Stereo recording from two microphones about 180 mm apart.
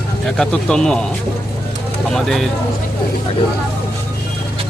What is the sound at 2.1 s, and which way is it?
Speech, centre (ahead or behind).